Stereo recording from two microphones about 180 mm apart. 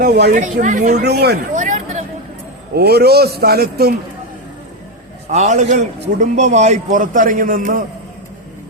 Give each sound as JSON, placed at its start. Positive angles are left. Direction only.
{"t": 0.0, "sound": "a man's voice", "side_deg": -60}
{"t": 0.3, "sound": "a man's voice", "side_deg": -45}
{"t": 1.0, "sound": "a man's voice", "side_deg": -65}
{"t": 1.5, "sound": "a sound", "side_deg": -45}
{"t": 2.7, "sound": "a man's voice", "side_deg": -60}
{"t": 5.3, "sound": "a man's voice", "side_deg": -40}